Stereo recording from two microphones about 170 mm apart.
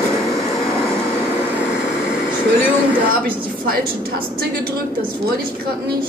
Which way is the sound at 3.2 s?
55° right (ahead or behind).